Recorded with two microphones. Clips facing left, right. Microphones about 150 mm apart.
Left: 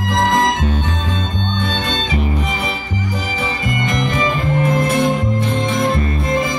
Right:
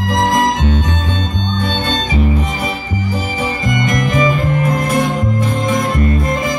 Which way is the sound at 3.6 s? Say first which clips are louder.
Right 3 dB; 30° left (ahead or behind).